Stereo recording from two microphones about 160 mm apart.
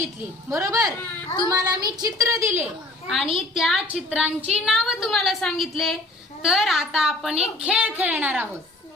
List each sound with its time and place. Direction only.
0.5 s a woman's voice: 20° right (ahead or behind)
3.5 s a woman's voice: centre (ahead or behind)